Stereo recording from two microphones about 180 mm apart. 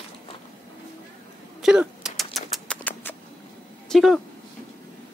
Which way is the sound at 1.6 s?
5° right (ahead or behind).